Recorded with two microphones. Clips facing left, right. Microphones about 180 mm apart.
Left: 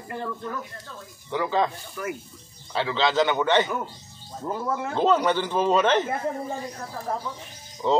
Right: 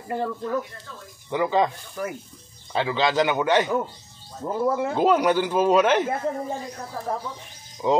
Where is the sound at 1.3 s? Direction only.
15° right (ahead or behind).